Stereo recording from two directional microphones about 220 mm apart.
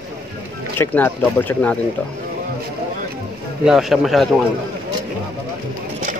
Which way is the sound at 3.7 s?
Centre (ahead or behind).